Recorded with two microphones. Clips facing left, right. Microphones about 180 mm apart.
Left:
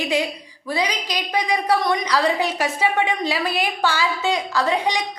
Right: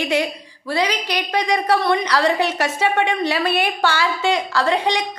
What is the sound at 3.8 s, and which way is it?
A woman's voice, 10° left (ahead or behind).